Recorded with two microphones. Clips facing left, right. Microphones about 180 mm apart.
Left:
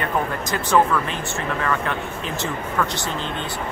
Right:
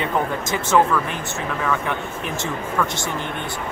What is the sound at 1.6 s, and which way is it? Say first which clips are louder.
Speech: right 1 dB; centre (ahead or behind).